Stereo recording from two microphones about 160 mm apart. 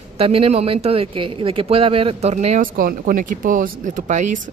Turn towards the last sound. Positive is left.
turn(degrees=-50)  # may be behind; listen again after turning